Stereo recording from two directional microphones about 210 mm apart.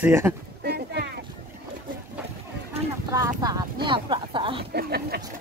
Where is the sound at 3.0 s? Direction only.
15° right (ahead or behind).